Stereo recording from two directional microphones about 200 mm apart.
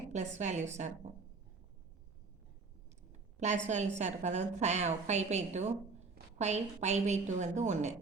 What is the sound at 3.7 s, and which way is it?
A woman's voice, 35° right (ahead or behind).